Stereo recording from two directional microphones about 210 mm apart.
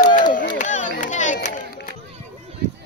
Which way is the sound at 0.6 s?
35° left (ahead or behind).